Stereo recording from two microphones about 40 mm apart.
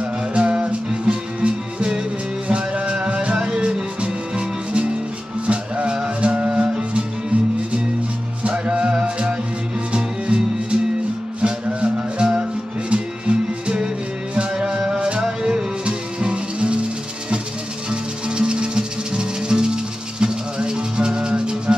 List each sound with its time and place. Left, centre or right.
0.3 s music: right
8.5 s music: right
17.8 s music: right